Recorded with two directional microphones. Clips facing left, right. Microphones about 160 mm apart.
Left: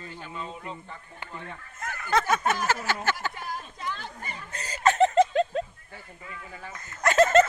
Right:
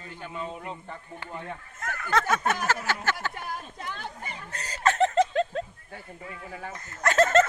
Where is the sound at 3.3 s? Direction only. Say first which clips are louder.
Even; 55° right (ahead or behind).